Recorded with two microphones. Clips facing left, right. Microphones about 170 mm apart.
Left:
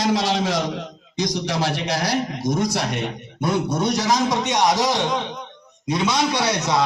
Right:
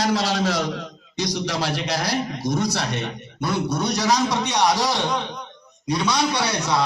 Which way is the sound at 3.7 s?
25° left (ahead or behind).